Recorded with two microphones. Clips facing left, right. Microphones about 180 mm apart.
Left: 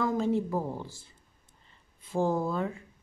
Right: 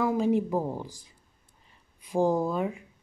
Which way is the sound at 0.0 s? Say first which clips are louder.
Right 3 dB; 10° right (ahead or behind).